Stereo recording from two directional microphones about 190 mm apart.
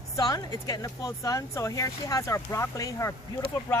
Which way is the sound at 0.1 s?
20° left (ahead or behind).